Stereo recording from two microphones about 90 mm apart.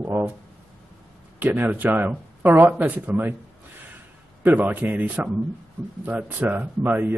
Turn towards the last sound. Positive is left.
turn(degrees=-20)  # may be behind; listen again after turning